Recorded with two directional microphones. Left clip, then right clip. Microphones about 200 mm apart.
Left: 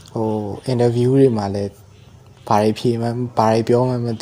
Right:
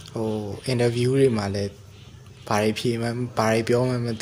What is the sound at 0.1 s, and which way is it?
Speech, 15° left (ahead or behind).